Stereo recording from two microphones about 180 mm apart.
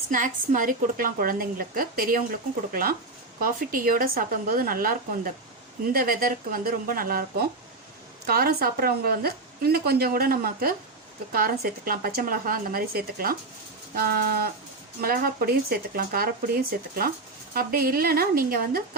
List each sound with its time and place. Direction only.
0.1 s a woman's voice: 45° right (ahead or behind)